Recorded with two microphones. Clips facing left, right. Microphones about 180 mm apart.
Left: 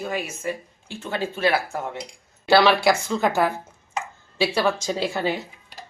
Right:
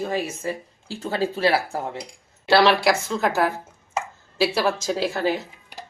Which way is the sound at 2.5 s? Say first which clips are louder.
Even; centre (ahead or behind).